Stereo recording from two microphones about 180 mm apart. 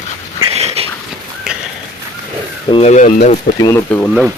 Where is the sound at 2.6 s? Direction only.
35° left (ahead or behind).